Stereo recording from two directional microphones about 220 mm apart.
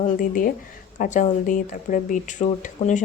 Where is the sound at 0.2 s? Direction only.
40° left (ahead or behind).